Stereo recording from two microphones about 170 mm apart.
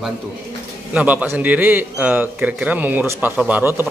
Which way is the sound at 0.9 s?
10° right (ahead or behind).